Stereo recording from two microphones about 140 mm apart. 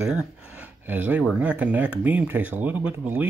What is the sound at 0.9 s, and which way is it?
Speech, 10° right (ahead or behind).